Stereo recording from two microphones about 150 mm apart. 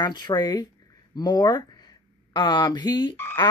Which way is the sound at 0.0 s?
30° left (ahead or behind).